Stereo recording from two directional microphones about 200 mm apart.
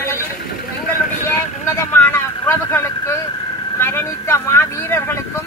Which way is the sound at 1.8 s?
10° left (ahead or behind).